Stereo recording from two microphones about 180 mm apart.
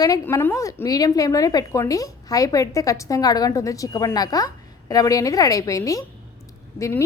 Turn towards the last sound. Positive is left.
turn(degrees=15)  # may be behind; listen again after turning